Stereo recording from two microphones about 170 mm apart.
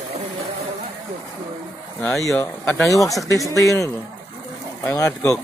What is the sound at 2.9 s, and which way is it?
Speech, 20° left (ahead or behind).